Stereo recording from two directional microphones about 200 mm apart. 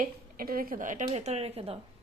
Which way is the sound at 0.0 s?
45° right (ahead or behind).